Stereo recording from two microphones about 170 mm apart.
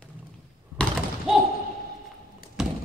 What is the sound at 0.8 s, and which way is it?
Slam, centre (ahead or behind).